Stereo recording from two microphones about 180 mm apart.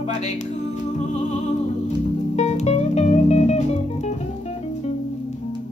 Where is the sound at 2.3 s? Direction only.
40° left (ahead or behind).